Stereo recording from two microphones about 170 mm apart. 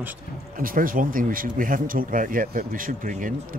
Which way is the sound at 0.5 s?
55° right (ahead or behind).